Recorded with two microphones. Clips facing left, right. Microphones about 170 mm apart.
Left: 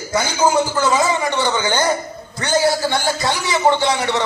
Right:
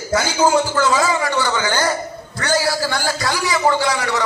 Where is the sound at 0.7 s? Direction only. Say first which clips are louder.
Even; 20° left (ahead or behind).